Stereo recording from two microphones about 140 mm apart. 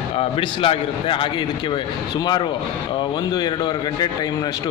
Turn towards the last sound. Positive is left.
turn(degrees=30)  # may be behind; listen again after turning